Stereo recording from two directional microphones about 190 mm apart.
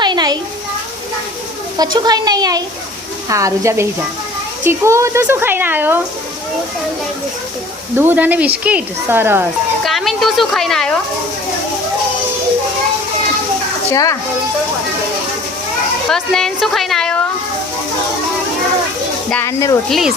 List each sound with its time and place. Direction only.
0.0 s a sound: 20° right (ahead or behind)
1.8 s speech: 20° right (ahead or behind)
7.9 s speech: 10° right (ahead or behind)
9.8 s a woman's voice: centre (ahead or behind)
13.9 s speech: 15° left (ahead or behind)
16.0 s a woman's voice: 5° left (ahead or behind)
19.3 s speech: 10° left (ahead or behind)
19.9 s a woman's voice: centre (ahead or behind)